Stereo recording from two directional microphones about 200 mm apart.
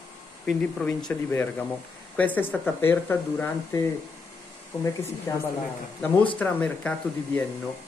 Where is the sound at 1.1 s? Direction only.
10° left (ahead or behind).